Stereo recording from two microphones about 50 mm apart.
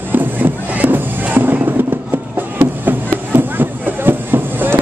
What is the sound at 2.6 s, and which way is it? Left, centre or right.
Chop, right.